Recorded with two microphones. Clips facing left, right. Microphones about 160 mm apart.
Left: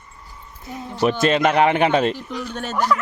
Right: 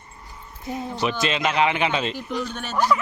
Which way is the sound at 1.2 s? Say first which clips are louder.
Left 6 dB; 50° left (ahead or behind).